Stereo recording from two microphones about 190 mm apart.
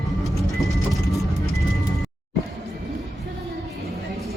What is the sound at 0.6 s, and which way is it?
Music, centre (ahead or behind).